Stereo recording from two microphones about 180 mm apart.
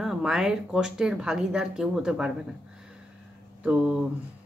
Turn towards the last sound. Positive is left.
turn(degrees=-5)  # may be behind; listen again after turning